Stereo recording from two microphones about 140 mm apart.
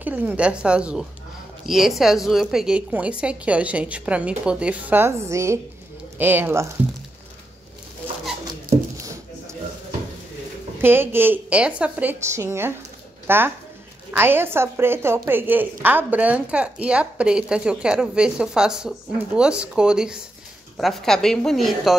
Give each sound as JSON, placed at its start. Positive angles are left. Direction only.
{"t": 0.0, "sound": "a woman's voice", "side_deg": -10}
{"t": 10.8, "sound": "a woman's voice", "side_deg": -15}